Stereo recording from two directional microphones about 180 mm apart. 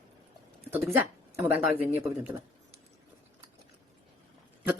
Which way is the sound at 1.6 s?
50° left (ahead or behind).